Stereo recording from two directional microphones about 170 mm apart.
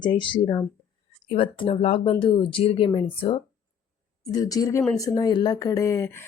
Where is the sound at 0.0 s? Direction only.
25° left (ahead or behind).